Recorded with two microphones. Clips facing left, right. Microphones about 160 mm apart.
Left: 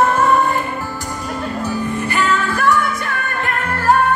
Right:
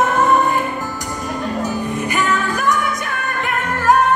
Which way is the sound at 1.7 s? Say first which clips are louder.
Even; 15° right (ahead or behind).